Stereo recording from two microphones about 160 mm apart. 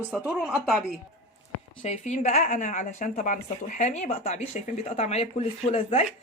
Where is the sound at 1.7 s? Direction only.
40° left (ahead or behind).